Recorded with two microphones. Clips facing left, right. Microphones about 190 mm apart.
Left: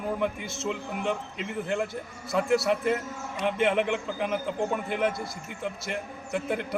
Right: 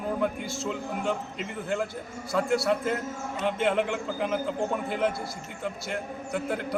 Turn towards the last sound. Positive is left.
turn(degrees=0)  # may be behind; listen again after turning